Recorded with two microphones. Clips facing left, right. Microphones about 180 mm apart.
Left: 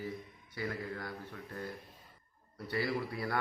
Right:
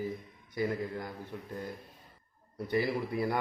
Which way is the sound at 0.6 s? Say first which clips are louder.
Right 6 dB; 20° right (ahead or behind).